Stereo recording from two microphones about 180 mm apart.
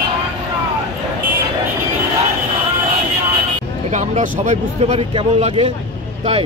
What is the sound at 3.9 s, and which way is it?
Speech, 40° right (ahead or behind).